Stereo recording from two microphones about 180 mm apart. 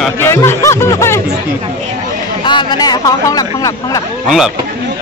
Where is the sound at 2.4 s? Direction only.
25° left (ahead or behind).